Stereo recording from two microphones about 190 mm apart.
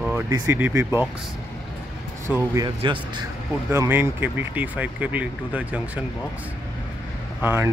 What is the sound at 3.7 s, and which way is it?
Speech, 10° right (ahead or behind).